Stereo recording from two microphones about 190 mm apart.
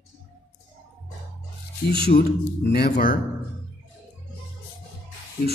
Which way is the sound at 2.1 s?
55° left (ahead or behind).